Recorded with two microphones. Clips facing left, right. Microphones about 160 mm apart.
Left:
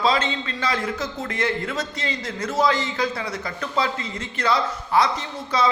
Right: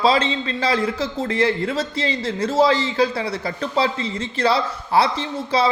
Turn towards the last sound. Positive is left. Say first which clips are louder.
# right 3 dB
turn(degrees=-30)  # may be behind; listen again after turning